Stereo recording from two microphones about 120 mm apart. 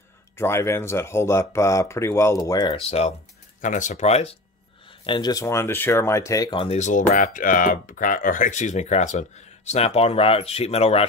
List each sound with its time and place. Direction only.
0.4 s speech: 20° left (ahead or behind)
2.7 s speech: 55° left (ahead or behind)
3.6 s speech: 90° left; by 4.4 s 60° left (ahead or behind)
4.8 s a sound: 45° left (ahead or behind)
5.3 s speech: 25° left (ahead or behind)
6.5 s speech: 50° left (ahead or behind)
6.8 s speech: 90° left; by 11.1 s 60° left (ahead or behind)